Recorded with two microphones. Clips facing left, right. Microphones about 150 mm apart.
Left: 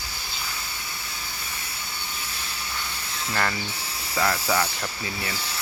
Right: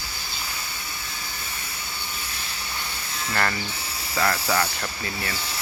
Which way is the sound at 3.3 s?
5° left (ahead or behind).